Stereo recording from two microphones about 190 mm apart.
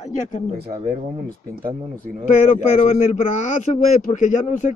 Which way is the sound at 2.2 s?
35° left (ahead or behind).